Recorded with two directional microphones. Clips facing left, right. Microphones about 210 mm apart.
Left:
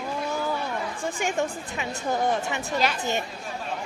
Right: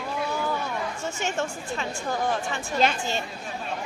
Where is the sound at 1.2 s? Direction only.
15° left (ahead or behind).